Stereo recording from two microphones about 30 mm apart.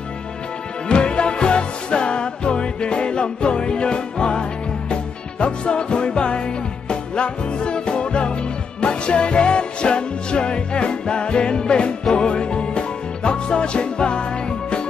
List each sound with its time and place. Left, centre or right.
0.8 s music: left